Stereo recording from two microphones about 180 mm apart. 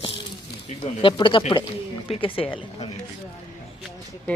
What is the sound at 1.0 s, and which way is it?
Speech, 25° left (ahead or behind).